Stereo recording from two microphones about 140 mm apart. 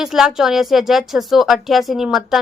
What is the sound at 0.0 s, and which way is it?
Speech, 5° right (ahead or behind).